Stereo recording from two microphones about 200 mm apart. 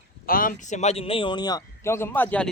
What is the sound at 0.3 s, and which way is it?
Speech, 45° left (ahead or behind).